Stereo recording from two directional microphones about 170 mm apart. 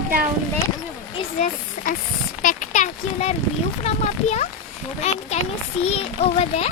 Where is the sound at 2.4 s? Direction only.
50° left (ahead or behind).